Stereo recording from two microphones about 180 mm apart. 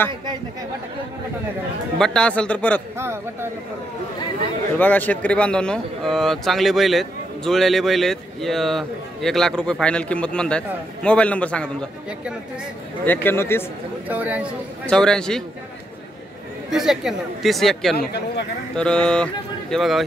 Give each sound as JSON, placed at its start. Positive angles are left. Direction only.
{"t": 2.0, "sound": "a man's voice", "side_deg": 5}
{"t": 3.0, "sound": "speech", "side_deg": -15}
{"t": 4.7, "sound": "speech", "side_deg": 10}
{"t": 13.0, "sound": "a man's voice", "side_deg": 10}
{"t": 14.0, "sound": "speech", "side_deg": -10}
{"t": 14.9, "sound": "speech", "side_deg": 5}
{"t": 16.7, "sound": "speech", "side_deg": 0}
{"t": 17.9, "sound": "speech", "side_deg": 70}
{"t": 18.8, "sound": "speech", "side_deg": 5}